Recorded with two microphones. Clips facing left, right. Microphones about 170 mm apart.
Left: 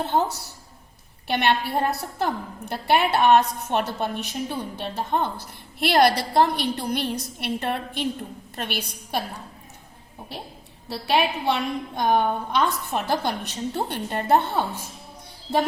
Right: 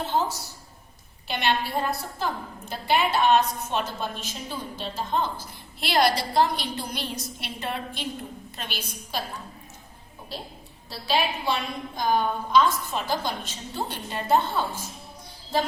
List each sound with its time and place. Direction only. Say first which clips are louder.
0.0 s a woman's voice: left 3 dB; 60° left (ahead or behind)
10.8 s a woman's voice: left 3 dB; 65° left (ahead or behind)